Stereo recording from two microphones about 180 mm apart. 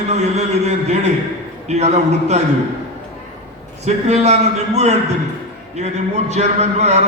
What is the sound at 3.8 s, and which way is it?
A man's voice, 35° right (ahead or behind).